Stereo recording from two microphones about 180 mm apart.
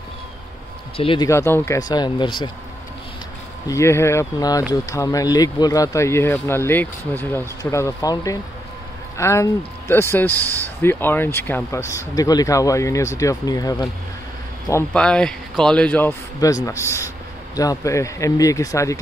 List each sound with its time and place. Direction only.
0.9 s speech: 30° left (ahead or behind)
1.3 s speech: 15° left (ahead or behind)
3.6 s speech: 15° left (ahead or behind)
14.7 s a man's voice: 10° left (ahead or behind)